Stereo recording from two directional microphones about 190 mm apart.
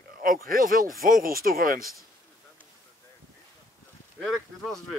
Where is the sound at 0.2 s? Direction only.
50° right (ahead or behind).